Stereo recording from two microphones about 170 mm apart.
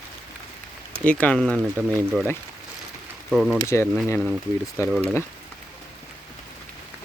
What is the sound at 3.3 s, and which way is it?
Speech, centre (ahead or behind).